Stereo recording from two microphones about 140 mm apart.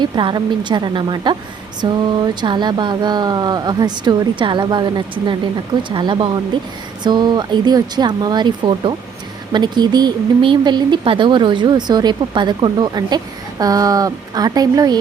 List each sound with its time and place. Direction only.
0.0 s speech: 35° right (ahead or behind)